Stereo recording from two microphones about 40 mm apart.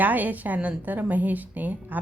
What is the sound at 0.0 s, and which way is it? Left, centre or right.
A woman's voice, right.